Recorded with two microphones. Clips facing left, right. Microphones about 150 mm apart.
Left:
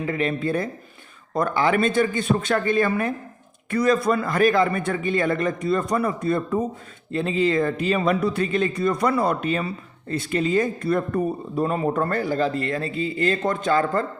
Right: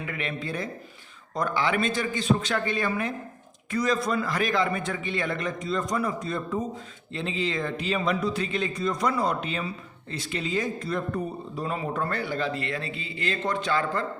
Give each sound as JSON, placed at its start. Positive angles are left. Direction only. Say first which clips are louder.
{"t": 0.0, "sound": "speech", "louder": "left 9 dB", "side_deg": 35}
{"t": 0.3, "sound": "a man's voice", "louder": "left 7 dB", "side_deg": 50}